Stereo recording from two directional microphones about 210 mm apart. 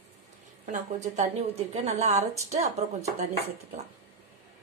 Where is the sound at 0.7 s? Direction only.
35° right (ahead or behind).